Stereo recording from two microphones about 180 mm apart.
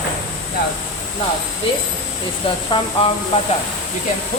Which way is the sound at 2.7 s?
25° left (ahead or behind).